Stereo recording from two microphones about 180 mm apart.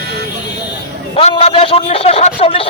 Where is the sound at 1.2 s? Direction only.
35° left (ahead or behind).